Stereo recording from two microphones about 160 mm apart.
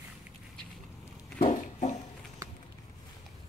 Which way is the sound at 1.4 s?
45° left (ahead or behind).